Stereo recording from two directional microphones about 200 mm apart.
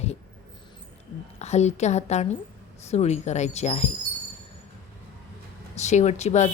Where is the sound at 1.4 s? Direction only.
35° left (ahead or behind).